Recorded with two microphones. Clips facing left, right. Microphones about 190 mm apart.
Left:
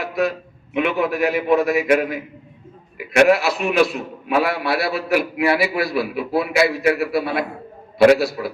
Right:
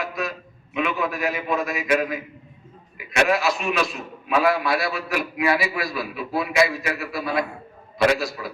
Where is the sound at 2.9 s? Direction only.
65° left (ahead or behind).